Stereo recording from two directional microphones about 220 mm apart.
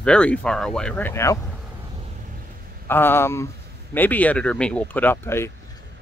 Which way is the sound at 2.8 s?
10° left (ahead or behind).